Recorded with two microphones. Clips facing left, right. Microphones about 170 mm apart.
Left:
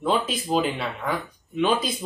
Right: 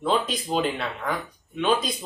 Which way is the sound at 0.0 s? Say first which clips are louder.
Even; centre (ahead or behind).